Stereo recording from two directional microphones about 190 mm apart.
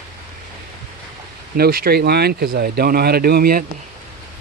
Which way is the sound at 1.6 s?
55° right (ahead or behind).